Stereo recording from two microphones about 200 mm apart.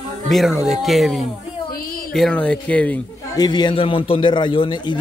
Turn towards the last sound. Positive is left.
turn(degrees=20)  # may be behind; listen again after turning